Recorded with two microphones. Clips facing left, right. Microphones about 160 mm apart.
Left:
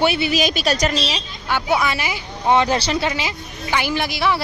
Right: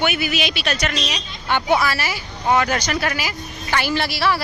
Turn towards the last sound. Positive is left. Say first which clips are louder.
# even
turn(degrees=20)  # may be behind; listen again after turning